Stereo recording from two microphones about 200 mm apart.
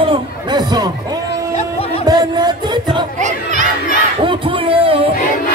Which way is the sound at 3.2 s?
35° right (ahead or behind).